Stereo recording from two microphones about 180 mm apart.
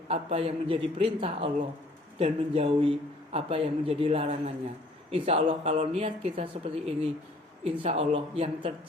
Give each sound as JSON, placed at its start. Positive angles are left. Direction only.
{"t": 0.1, "sound": "speech", "side_deg": -35}